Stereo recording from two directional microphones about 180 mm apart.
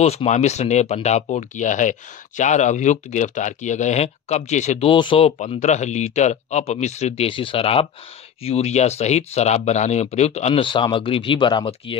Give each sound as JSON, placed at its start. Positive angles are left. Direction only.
{"t": 0.0, "sound": "speech", "side_deg": 35}